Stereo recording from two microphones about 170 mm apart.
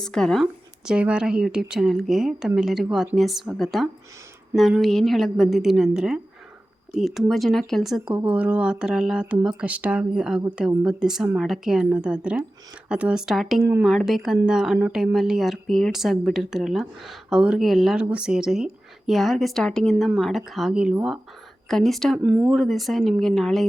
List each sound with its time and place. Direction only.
0.0 s speech: 5° left (ahead or behind)
13.6 s speech: 15° right (ahead or behind)
13.8 s speech: centre (ahead or behind)
22.2 s speech: 15° right (ahead or behind)
22.4 s speech: centre (ahead or behind)